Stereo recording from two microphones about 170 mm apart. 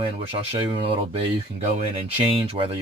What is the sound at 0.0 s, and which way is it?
Speech, 30° right (ahead or behind).